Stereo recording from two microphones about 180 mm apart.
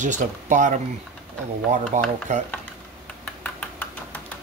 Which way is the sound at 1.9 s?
40° right (ahead or behind).